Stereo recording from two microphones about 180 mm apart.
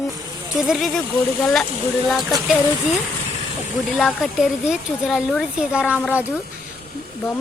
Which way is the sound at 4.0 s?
Centre (ahead or behind).